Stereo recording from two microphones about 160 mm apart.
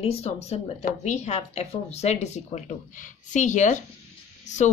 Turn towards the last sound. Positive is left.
turn(degrees=50)  # may be behind; listen again after turning